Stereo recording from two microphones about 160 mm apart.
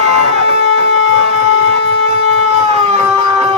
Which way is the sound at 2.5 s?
40° right (ahead or behind).